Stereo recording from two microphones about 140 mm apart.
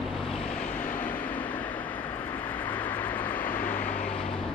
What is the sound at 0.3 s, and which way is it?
Vehicle, 5° left (ahead or behind).